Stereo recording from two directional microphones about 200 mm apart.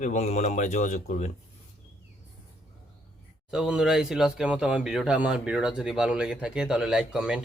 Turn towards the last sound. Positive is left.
turn(degrees=-5)  # may be behind; listen again after turning